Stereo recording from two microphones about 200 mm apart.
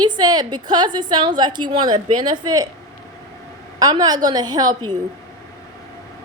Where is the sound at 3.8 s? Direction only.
20° right (ahead or behind).